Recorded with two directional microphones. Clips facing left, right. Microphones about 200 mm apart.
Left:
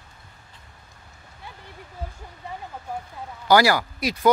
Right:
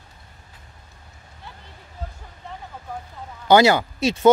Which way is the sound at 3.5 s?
25° right (ahead or behind).